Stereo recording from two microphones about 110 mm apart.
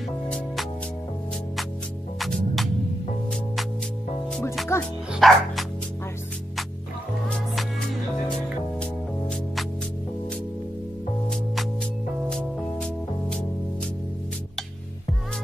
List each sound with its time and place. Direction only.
2.1 s music: centre (ahead or behind)
4.7 s music: 25° left (ahead or behind)
5.1 s bow-wow: centre (ahead or behind)
12.3 s music: 5° left (ahead or behind)